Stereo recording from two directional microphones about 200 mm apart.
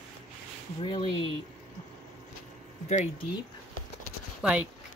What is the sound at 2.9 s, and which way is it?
Speech, 30° left (ahead or behind).